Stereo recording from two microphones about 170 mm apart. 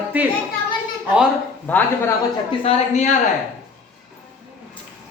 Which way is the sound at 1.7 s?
10° left (ahead or behind).